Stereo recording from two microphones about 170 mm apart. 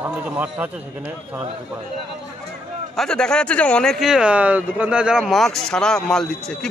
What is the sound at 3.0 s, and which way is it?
Speech, 5° left (ahead or behind).